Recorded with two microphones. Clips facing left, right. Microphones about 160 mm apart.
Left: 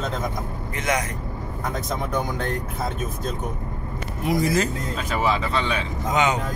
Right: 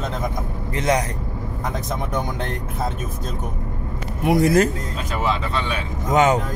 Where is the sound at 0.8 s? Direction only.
35° right (ahead or behind).